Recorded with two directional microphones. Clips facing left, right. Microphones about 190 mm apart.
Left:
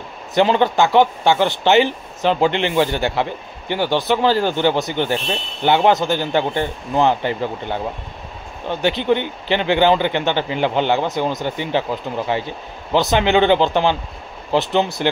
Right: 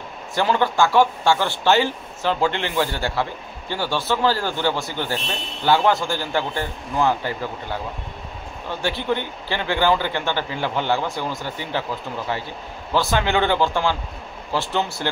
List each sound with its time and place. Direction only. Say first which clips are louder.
0.3 s speech: left 5 dB; 20° left (ahead or behind)